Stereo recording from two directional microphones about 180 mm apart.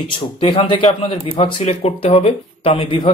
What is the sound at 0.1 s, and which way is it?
A man's voice, 30° left (ahead or behind).